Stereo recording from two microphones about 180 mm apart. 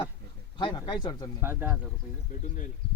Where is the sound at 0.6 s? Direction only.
25° left (ahead or behind).